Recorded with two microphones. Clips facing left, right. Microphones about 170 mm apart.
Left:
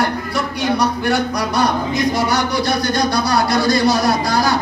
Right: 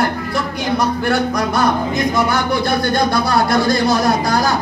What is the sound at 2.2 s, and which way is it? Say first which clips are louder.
Speech: right 1 dB; 50° right (ahead or behind).